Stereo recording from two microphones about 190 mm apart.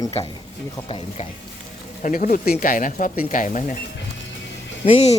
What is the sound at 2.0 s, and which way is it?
Speech, 40° left (ahead or behind).